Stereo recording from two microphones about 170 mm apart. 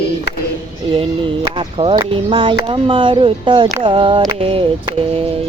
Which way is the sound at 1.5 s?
30° right (ahead or behind).